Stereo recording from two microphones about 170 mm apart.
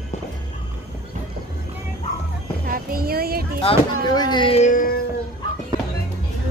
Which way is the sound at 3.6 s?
25° left (ahead or behind).